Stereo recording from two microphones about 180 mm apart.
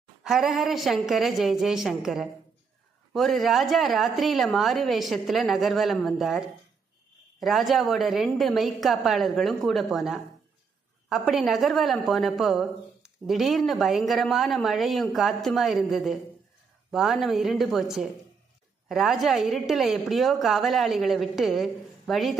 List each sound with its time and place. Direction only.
0.2 s a woman's voice: centre (ahead or behind)